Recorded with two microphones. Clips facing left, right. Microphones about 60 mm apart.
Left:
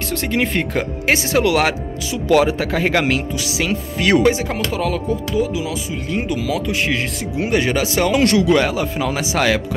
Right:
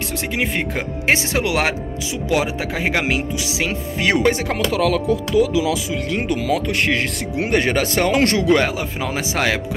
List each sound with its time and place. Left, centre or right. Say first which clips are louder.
0.1 s speech: left 4 dB; centre
1.0 s speech: left 2 dB; right
4.3 s chopping: even; right
5.1 s speech: right 3 dB; right
6.0 s speech: even; right